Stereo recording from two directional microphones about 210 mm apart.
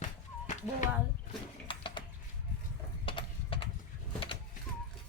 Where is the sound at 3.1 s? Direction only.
25° left (ahead or behind).